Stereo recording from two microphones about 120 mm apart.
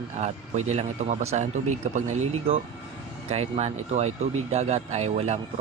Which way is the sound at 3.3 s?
60° right (ahead or behind).